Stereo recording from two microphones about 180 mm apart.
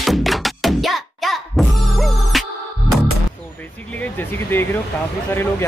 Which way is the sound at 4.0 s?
10° left (ahead or behind).